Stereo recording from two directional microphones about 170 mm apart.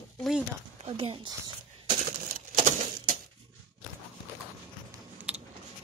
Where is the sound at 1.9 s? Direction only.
50° right (ahead or behind).